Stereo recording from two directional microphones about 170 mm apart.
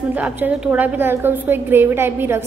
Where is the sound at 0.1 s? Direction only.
10° right (ahead or behind).